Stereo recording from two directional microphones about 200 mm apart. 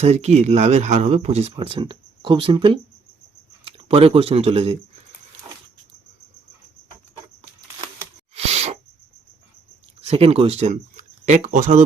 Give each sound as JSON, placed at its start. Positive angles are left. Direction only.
{"t": 0.0, "sound": "speech", "side_deg": -35}
{"t": 8.4, "sound": "sneeze", "side_deg": -35}
{"t": 10.0, "sound": "speech", "side_deg": -30}